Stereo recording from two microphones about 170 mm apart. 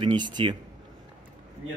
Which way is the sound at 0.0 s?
25° right (ahead or behind).